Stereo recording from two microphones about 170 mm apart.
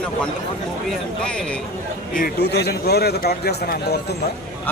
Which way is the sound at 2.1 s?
65° left (ahead or behind).